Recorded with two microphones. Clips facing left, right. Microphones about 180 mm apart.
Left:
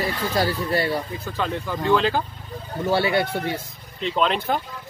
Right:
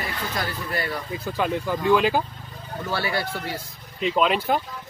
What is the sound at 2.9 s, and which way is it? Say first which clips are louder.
Speech: left 6 dB; 25° left (ahead or behind).